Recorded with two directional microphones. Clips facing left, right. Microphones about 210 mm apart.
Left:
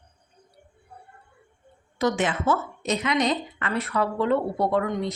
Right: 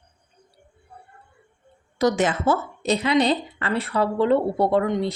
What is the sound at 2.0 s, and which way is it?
A woman's voice, 40° right (ahead or behind).